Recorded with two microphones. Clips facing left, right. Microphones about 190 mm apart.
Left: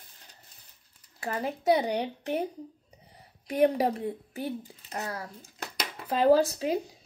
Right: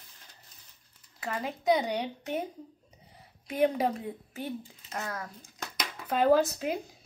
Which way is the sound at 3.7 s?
35° left (ahead or behind).